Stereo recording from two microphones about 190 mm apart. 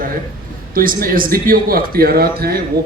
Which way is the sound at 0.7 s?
50° right (ahead or behind).